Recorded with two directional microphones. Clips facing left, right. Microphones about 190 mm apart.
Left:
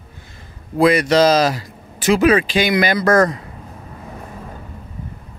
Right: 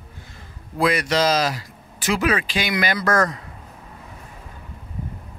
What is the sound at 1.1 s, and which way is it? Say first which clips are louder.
Speech: left 6 dB; 35° left (ahead or behind).